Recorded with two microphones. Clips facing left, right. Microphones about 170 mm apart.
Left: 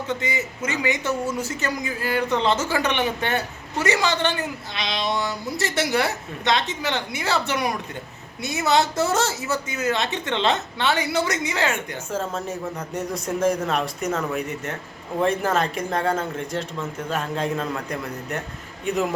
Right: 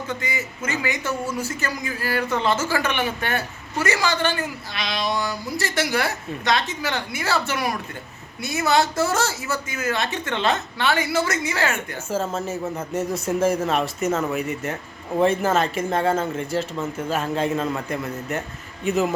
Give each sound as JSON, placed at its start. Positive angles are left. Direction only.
{"t": 0.1, "sound": "speech", "side_deg": 20}
{"t": 12.1, "sound": "speech", "side_deg": -5}